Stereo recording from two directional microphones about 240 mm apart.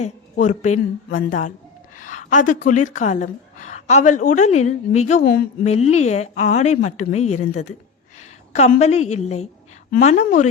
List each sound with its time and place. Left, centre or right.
0.0 s a woman's voice: left